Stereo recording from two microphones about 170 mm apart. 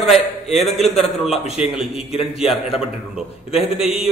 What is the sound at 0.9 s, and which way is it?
Speech, 40° left (ahead or behind).